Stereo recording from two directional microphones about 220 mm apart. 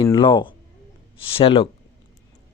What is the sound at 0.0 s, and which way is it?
Speech, 20° left (ahead or behind).